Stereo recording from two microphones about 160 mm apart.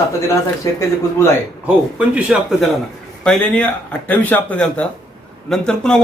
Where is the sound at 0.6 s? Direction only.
20° left (ahead or behind).